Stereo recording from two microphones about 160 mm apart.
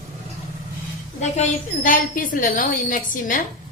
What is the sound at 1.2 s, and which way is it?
A woman's voice, 50° left (ahead or behind).